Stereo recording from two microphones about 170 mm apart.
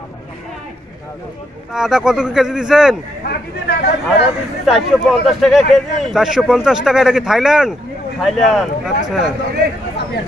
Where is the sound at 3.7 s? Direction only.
70° left (ahead or behind).